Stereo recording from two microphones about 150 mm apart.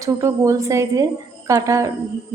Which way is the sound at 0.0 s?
20° right (ahead or behind).